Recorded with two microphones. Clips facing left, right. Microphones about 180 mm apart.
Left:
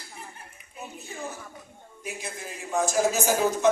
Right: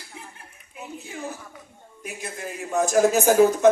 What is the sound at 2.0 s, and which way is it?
Speech, 55° right (ahead or behind).